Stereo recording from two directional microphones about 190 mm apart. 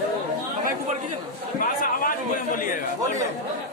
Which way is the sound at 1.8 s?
50° left (ahead or behind).